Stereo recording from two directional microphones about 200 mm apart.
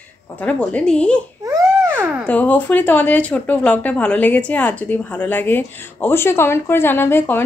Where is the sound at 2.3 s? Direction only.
10° left (ahead or behind).